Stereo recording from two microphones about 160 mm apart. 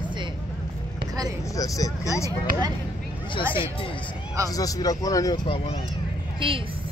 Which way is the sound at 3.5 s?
35° left (ahead or behind).